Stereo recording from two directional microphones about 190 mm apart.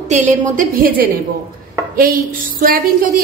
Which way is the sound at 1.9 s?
50° right (ahead or behind).